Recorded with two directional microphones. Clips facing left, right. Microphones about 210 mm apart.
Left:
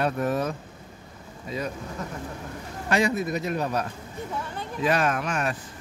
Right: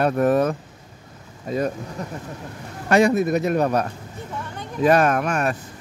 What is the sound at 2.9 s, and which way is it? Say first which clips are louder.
Speech: right 7 dB; 50° right (ahead or behind).